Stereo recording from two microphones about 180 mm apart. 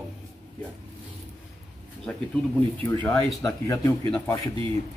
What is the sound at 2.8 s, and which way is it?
Speech, 15° left (ahead or behind).